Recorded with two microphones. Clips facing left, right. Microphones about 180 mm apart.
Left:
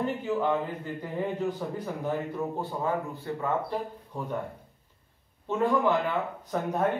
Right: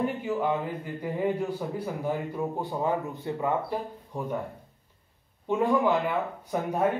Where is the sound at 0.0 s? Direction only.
10° right (ahead or behind).